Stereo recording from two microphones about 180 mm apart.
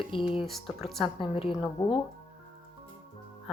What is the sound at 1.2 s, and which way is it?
Speech, 30° left (ahead or behind).